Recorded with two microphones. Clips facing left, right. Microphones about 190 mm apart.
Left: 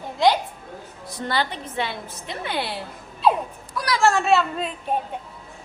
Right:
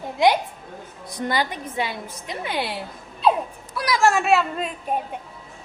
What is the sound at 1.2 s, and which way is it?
A woman's voice, 10° right (ahead or behind).